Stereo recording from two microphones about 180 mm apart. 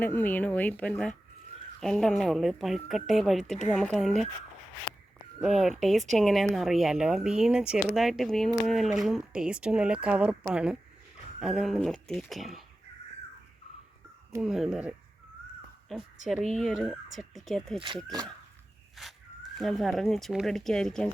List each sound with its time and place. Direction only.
0.0 s speech: 10° left (ahead or behind)
5.4 s speech: centre (ahead or behind)
14.4 s speech: centre (ahead or behind)
17.7 s speech: 25° right (ahead or behind)
18.9 s speech: centre (ahead or behind)